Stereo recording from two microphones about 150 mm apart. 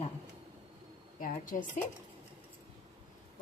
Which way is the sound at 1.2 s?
65° left (ahead or behind).